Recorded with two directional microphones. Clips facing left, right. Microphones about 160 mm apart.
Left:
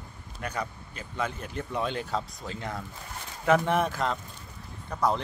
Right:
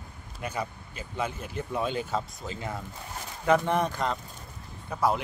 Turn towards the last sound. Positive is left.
turn(degrees=-5)  # may be behind; listen again after turning